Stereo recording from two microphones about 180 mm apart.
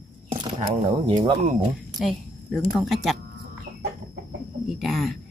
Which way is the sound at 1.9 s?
Centre (ahead or behind).